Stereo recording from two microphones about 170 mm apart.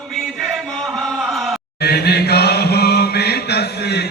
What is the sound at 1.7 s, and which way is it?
Chant, 70° left (ahead or behind).